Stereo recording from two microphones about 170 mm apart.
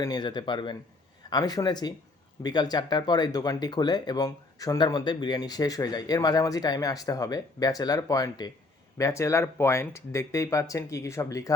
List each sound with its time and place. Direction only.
0.0 s speech: 25° left (ahead or behind)